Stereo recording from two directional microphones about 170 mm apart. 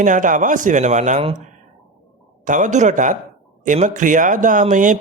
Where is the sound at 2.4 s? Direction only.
50° right (ahead or behind).